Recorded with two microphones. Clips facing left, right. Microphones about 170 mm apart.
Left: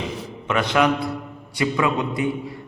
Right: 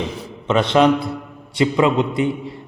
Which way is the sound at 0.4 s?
25° right (ahead or behind).